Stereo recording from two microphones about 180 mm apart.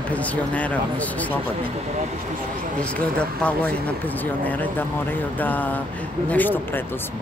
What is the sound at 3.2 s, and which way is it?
Speech, 5° left (ahead or behind).